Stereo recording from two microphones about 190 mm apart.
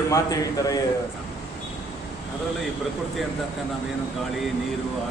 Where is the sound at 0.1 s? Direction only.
20° left (ahead or behind).